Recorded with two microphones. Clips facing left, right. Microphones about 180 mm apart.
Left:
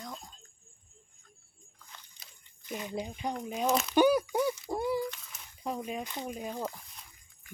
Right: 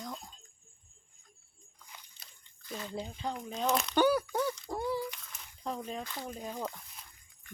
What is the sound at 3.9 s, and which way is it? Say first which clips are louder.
Speech: left 4 dB; 15° left (ahead or behind).